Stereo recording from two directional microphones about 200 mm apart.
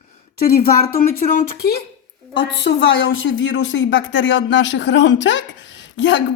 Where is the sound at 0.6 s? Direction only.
45° left (ahead or behind).